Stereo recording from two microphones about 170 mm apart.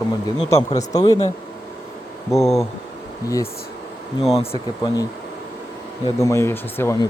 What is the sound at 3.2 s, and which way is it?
Speech, 20° left (ahead or behind).